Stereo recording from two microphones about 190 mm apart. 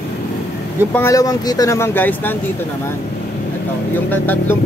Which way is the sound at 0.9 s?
15° left (ahead or behind).